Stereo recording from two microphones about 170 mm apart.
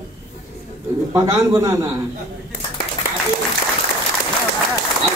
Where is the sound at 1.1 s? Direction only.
20° right (ahead or behind).